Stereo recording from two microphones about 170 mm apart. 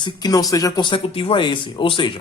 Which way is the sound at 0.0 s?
25° left (ahead or behind).